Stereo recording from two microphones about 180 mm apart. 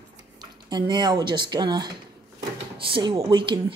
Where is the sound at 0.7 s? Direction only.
25° right (ahead or behind).